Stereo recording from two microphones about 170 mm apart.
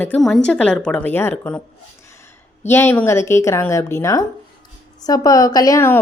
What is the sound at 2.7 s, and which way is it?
A woman's voice, 15° left (ahead or behind).